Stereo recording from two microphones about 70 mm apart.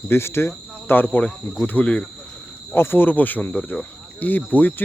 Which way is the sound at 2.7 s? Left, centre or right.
Left.